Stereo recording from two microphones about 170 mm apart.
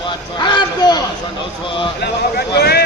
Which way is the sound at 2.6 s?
70° left (ahead or behind).